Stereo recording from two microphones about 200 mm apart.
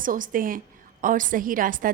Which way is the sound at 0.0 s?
45° right (ahead or behind).